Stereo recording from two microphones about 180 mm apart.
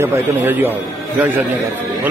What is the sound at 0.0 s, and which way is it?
Speech, 10° right (ahead or behind).